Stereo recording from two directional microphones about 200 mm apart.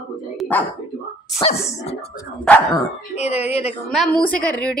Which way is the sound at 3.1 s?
30° left (ahead or behind).